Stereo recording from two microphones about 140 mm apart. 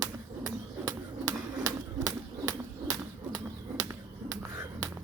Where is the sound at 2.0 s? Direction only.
25° right (ahead or behind).